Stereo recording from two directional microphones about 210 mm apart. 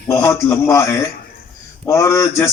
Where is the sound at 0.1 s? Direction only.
15° left (ahead or behind).